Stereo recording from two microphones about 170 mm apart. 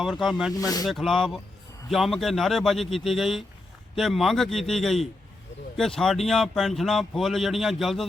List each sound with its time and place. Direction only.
0.0 s speech: centre (ahead or behind)
0.5 s speech: 20° left (ahead or behind)
0.9 s speech: centre (ahead or behind)